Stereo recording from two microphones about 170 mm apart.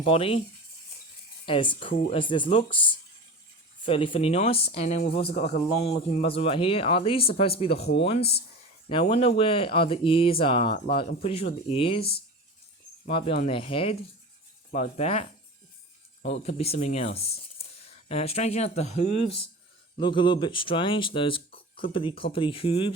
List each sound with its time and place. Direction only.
0.0 s a man's voice: 35° left (ahead or behind)
1.5 s a man's voice: 30° left (ahead or behind)
10.7 s speech: 65° left (ahead or behind)
10.9 s a man's voice: 35° left (ahead or behind)
11.9 s speech: 65° left (ahead or behind)
13.1 s a man's voice: 35° left (ahead or behind)
14.7 s a man's voice: 45° left (ahead or behind)
20.0 s a man's voice: 30° left (ahead or behind)